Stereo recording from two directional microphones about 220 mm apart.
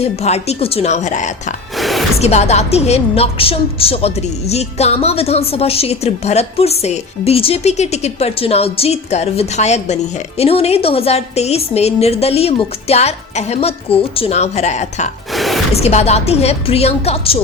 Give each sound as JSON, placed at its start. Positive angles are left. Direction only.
{"t": 0.0, "sound": "a woman's voice", "side_deg": 30}
{"t": 1.7, "sound": "music", "side_deg": 0}
{"t": 2.2, "sound": "a woman's voice", "side_deg": 30}
{"t": 15.3, "sound": "a sound", "side_deg": 0}
{"t": 15.7, "sound": "a woman's voice", "side_deg": 30}